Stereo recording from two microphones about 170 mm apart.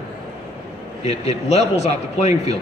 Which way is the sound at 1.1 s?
40° left (ahead or behind).